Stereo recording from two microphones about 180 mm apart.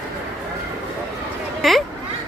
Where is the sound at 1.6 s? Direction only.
Centre (ahead or behind).